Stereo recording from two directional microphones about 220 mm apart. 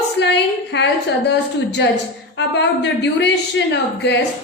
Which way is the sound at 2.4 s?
50° left (ahead or behind).